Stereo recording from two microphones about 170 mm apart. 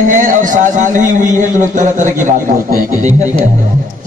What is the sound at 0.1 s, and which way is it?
Speech, 50° right (ahead or behind).